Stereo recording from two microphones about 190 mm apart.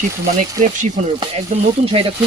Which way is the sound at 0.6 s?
40° right (ahead or behind).